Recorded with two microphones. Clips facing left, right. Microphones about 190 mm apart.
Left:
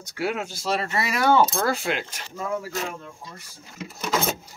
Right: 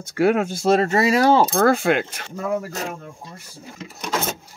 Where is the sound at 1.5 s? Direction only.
55° right (ahead or behind).